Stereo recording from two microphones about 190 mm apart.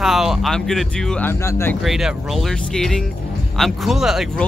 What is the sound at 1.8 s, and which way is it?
Speech, centre (ahead or behind).